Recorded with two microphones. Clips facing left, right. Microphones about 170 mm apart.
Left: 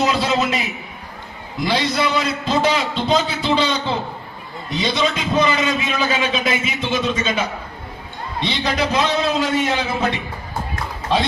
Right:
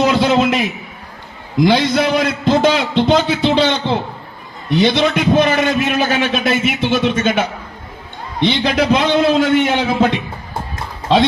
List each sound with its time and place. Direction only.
0.0 s a sound: 85° right
1.6 s a man's voice: 90° right
4.7 s a man's voice: 70° right (ahead or behind)
8.4 s a man's voice: 90° right